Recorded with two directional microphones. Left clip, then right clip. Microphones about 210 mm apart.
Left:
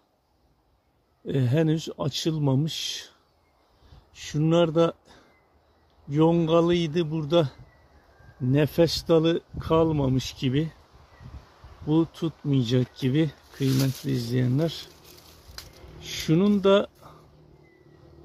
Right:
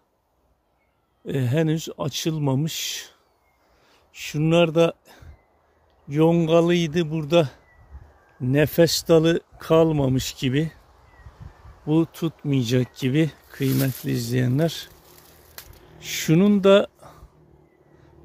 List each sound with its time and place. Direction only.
1.2 s speech: 10° right (ahead or behind)
11.9 s speech: 15° right (ahead or behind)
15.5 s a sound: 20° right (ahead or behind)